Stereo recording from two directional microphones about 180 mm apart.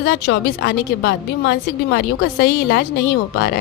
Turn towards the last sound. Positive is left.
turn(degrees=60)  # may be behind; listen again after turning